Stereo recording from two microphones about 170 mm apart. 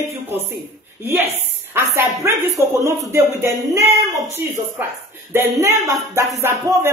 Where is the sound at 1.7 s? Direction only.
15° right (ahead or behind).